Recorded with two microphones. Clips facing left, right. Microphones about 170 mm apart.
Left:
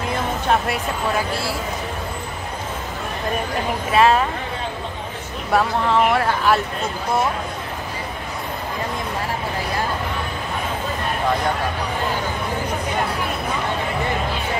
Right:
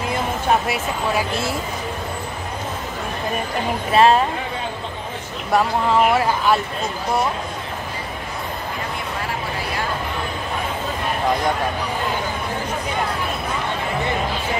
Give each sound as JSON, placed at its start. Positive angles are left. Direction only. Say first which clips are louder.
{"t": 0.5, "sound": "speech", "louder": "right 1 dB", "side_deg": -5}
{"t": 1.3, "sound": "a man's voice", "louder": "right 1 dB", "side_deg": -20}
{"t": 3.9, "sound": "speech", "louder": "right 1 dB", "side_deg": -30}
{"t": 5.5, "sound": "speech", "louder": "right 1 dB", "side_deg": -5}